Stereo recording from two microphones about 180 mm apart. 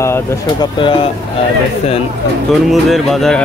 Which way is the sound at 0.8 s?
30° left (ahead or behind).